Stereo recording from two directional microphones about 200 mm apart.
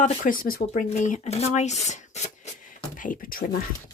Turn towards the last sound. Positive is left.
turn(degrees=45)  # may be behind; listen again after turning